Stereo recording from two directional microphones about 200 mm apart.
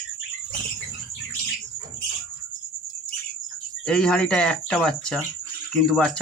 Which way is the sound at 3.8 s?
5° left (ahead or behind).